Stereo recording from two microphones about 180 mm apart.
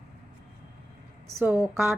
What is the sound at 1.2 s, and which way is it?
Speech, 15° right (ahead or behind).